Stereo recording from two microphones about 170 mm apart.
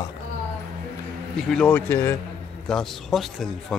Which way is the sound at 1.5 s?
5° left (ahead or behind).